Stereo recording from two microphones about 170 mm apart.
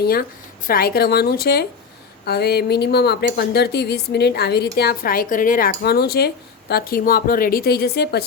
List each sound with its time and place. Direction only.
0.0 s a woman's voice: 60° left (ahead or behind)